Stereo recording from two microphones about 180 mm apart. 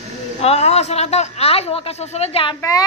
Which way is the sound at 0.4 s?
35° left (ahead or behind).